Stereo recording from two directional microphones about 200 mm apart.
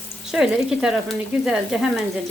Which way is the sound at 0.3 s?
5° right (ahead or behind).